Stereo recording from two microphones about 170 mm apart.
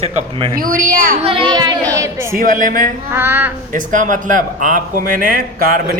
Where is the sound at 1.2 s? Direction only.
30° right (ahead or behind).